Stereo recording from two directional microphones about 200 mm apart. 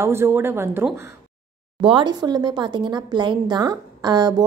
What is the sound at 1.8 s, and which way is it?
Speech, 25° right (ahead or behind).